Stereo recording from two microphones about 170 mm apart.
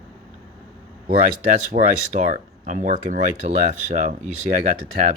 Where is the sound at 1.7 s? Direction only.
50° right (ahead or behind).